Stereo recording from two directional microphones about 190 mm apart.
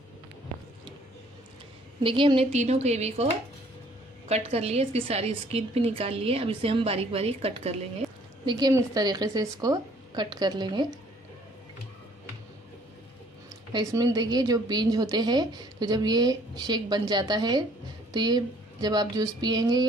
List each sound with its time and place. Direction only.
2.0 s a woman's voice: 25° right (ahead or behind)
8.0 s a sound: centre (ahead or behind)
8.5 s a woman's voice: 20° right (ahead or behind)
13.7 s a woman's voice: 20° right (ahead or behind)